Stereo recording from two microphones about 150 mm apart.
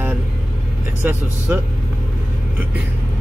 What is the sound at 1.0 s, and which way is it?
Speech, 10° right (ahead or behind).